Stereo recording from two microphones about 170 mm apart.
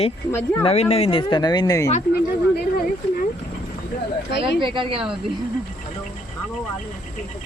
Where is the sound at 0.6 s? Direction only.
35° left (ahead or behind); by 1.9 s 20° left (ahead or behind).